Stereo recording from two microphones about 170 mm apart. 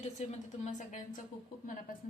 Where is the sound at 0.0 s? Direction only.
45° left (ahead or behind).